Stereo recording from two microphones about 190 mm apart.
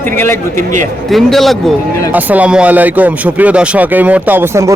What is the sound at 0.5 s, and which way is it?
Speech, 40° right (ahead or behind).